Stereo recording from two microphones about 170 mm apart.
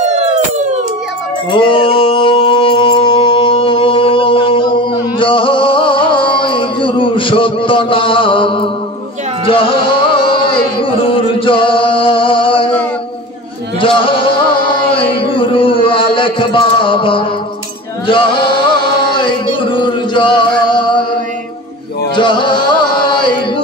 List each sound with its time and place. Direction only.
0.1 s police car: 40° right (ahead or behind)
1.5 s mantra: 30° left (ahead or behind)
5.2 s music: 30° left (ahead or behind)
13.7 s a sound: 30° left (ahead or behind)
18.0 s male singing: 30° left (ahead or behind)
22.1 s music: 30° left (ahead or behind)